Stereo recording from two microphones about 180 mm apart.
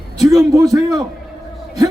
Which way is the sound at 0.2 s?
20° right (ahead or behind).